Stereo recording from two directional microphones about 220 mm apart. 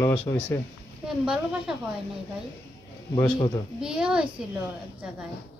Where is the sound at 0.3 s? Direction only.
10° left (ahead or behind).